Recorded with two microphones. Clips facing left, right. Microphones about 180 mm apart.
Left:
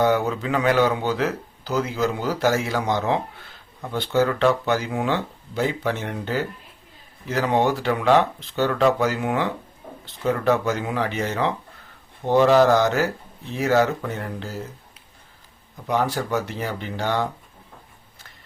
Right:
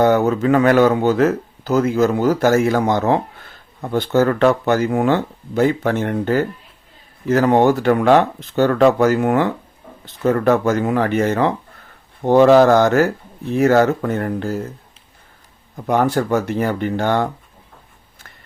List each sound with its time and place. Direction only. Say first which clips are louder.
0.0 s speech: right 6 dB; 45° right (ahead or behind)
15.7 s speech: right 6 dB; 50° right (ahead or behind)